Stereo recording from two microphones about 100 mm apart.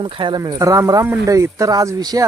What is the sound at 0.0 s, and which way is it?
Speech, 50° right (ahead or behind).